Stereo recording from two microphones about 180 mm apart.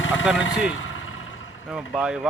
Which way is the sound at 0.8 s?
90° left.